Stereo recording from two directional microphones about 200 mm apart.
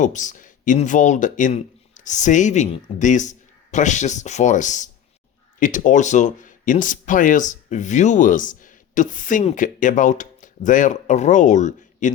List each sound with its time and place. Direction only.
0.0 s speech: 40° left (ahead or behind)